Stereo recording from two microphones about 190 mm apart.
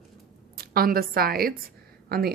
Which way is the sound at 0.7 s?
50° right (ahead or behind).